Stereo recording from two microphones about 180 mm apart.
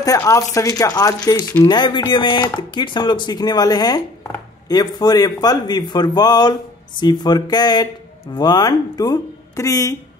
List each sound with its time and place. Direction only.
0.0 s speech: 15° left (ahead or behind)